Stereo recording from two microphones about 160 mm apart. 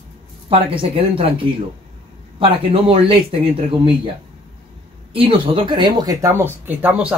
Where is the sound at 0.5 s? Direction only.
35° right (ahead or behind).